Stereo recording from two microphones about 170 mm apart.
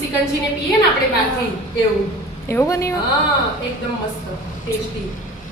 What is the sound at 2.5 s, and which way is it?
Speech, 15° left (ahead or behind).